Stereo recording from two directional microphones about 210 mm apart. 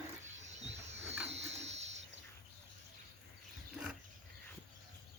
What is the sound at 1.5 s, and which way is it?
Water, 30° right (ahead or behind).